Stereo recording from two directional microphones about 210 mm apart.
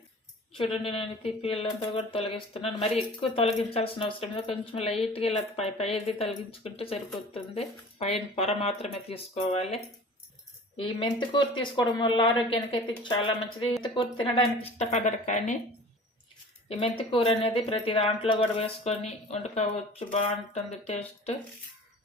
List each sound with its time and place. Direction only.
0.5 s speech: 25° left (ahead or behind)
16.6 s speech: 25° left (ahead or behind)